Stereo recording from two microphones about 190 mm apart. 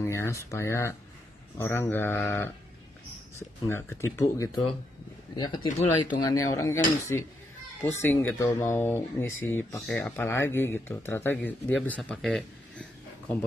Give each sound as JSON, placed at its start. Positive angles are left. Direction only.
{"t": 0.0, "sound": "speech", "side_deg": 15}
{"t": 5.7, "sound": "speech", "side_deg": 45}
{"t": 6.3, "sound": "speech", "side_deg": 15}